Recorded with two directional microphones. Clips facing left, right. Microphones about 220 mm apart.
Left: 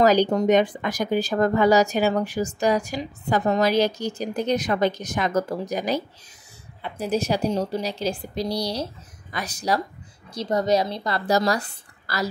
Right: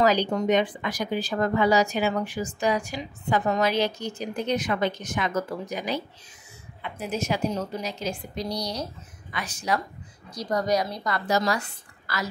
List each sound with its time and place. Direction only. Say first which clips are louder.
0.0 s speech: left 4 dB; 45° left (ahead or behind)
10.3 s speech: left 3 dB; 25° left (ahead or behind)